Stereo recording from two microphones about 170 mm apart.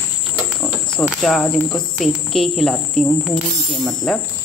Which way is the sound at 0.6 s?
5° left (ahead or behind).